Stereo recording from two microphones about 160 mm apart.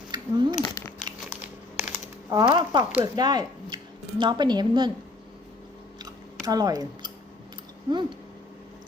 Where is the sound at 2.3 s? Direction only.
25° right (ahead or behind).